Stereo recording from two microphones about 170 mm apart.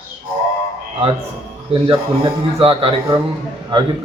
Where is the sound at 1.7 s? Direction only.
30° right (ahead or behind).